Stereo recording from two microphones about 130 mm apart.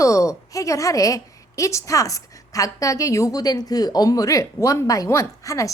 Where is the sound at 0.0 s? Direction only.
25° left (ahead or behind).